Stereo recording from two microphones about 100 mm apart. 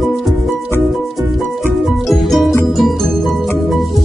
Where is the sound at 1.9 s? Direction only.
Centre (ahead or behind).